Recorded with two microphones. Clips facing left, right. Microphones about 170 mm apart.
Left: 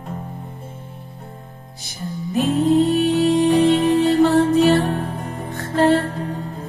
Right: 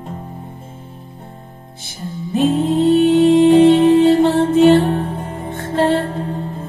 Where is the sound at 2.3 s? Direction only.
25° right (ahead or behind).